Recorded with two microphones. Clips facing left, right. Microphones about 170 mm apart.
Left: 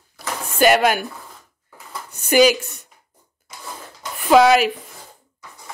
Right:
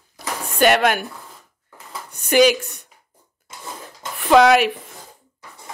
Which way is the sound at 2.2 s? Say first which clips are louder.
Even; 5° left (ahead or behind).